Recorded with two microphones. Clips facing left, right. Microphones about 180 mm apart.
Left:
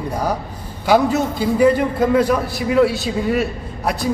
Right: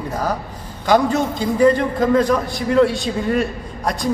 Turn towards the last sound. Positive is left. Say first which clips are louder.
# left 1 dB
turn(degrees=5)  # may be behind; listen again after turning